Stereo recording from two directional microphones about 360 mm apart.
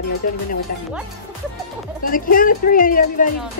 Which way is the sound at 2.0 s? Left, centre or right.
Left.